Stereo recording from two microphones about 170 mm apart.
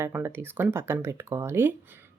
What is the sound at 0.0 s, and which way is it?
Speech, 15° right (ahead or behind).